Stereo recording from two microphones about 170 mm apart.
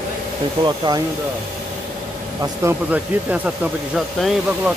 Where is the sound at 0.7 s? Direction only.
25° right (ahead or behind).